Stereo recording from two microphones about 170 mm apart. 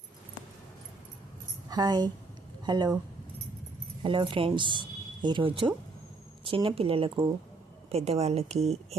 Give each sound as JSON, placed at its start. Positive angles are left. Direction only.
{"t": 1.7, "sound": "speech", "side_deg": -25}
{"t": 4.0, "sound": "a woman's voice", "side_deg": -30}